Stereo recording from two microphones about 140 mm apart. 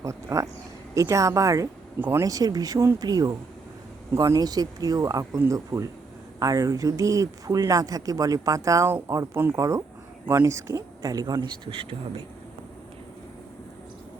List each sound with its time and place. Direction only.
0.0 s speech: 20° right (ahead or behind)
2.2 s speech: 25° right (ahead or behind); by 12.2 s 40° right (ahead or behind)